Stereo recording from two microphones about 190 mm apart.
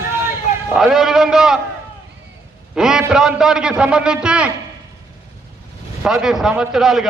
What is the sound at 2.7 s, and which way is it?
A man's voice, 5° right (ahead or behind).